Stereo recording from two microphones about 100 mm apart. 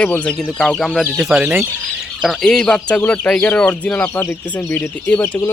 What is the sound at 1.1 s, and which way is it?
Speech, 15° right (ahead or behind).